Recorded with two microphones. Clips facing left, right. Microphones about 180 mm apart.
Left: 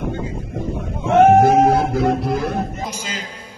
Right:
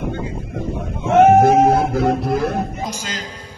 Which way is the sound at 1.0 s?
5° right (ahead or behind).